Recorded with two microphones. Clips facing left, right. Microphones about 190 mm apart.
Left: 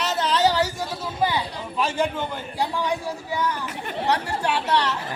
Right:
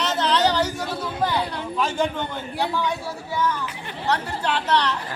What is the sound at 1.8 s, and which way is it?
A man's voice, centre (ahead or behind).